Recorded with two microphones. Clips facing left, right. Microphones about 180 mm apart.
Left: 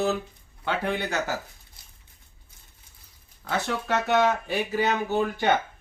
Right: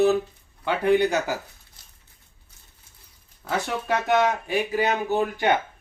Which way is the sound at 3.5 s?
10° right (ahead or behind).